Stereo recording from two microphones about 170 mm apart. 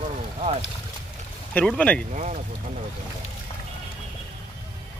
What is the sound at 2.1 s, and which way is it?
Speech, 45° right (ahead or behind).